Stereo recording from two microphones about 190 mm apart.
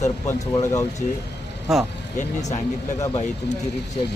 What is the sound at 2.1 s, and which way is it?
Speech, 35° left (ahead or behind).